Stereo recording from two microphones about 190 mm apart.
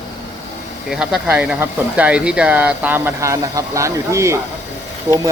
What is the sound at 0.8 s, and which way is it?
Speech, centre (ahead or behind).